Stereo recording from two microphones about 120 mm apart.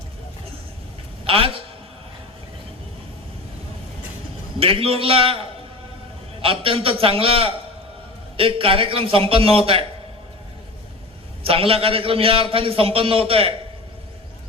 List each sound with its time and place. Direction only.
1.2 s a man's voice: 50° right (ahead or behind)
4.6 s a man's voice: 50° right (ahead or behind)
11.4 s a man's voice: 50° right (ahead or behind)